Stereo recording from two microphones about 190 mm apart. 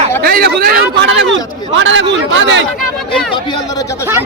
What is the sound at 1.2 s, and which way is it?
A man's voice, 75° right (ahead or behind).